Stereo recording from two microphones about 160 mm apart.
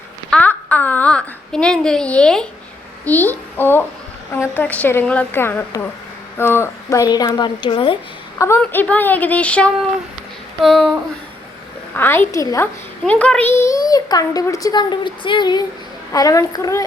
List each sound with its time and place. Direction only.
0.3 s a sound: 10° left (ahead or behind)
3.0 s a child's voice: 10° left (ahead or behind); by 7.9 s 30° left (ahead or behind)
8.4 s a woman's voice: 15° left (ahead or behind)
11.9 s a woman's voice: 15° left (ahead or behind)
13.1 s a child's voice: 10° left (ahead or behind)